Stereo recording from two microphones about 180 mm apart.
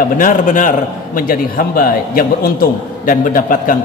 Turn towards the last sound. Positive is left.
turn(degrees=50)  # may be behind; listen again after turning